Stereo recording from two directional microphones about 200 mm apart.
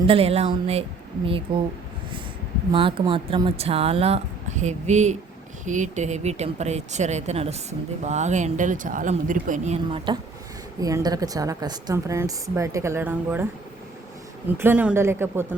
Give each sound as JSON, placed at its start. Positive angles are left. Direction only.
{"t": 0.0, "sound": "speech", "side_deg": -30}
{"t": 2.7, "sound": "speech", "side_deg": -25}
{"t": 10.1, "sound": "a woman's voice", "side_deg": -25}
{"t": 14.6, "sound": "a woman's voice", "side_deg": -5}